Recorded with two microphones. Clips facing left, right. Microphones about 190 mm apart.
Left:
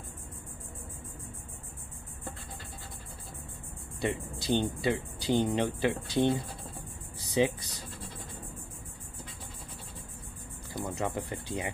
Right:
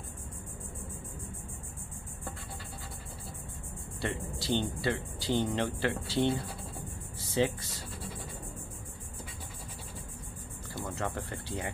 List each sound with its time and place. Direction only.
4.0 s speech: 15° left (ahead or behind)
10.8 s speech: 15° left (ahead or behind)